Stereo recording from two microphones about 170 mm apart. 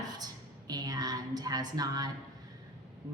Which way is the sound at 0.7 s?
20° right (ahead or behind).